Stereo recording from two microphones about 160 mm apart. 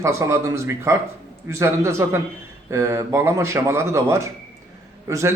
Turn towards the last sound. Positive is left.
turn(degrees=-20)  # may be behind; listen again after turning